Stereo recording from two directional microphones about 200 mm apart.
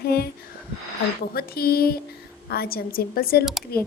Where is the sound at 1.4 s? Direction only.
50° left (ahead or behind).